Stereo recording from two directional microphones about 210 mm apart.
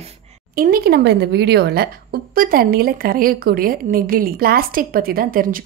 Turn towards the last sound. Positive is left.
turn(degrees=-40)  # may be behind; listen again after turning